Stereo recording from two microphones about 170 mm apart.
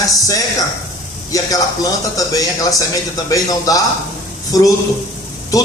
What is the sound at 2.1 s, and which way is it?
A man's voice, 20° left (ahead or behind).